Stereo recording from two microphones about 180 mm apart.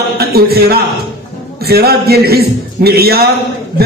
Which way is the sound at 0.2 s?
60° right (ahead or behind).